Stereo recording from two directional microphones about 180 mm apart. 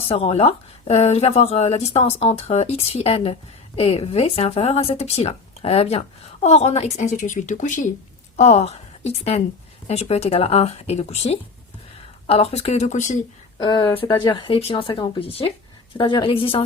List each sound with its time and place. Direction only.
0.1 s a woman's voice: 35° left (ahead or behind)
13.6 s speech: 25° left (ahead or behind)